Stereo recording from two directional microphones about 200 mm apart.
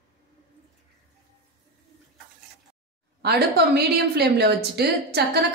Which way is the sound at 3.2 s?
55° right (ahead or behind).